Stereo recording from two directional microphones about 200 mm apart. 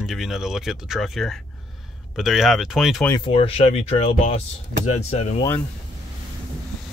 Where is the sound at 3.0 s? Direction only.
20° left (ahead or behind).